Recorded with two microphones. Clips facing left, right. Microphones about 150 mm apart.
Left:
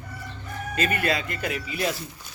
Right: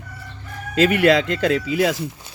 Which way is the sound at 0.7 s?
85° right.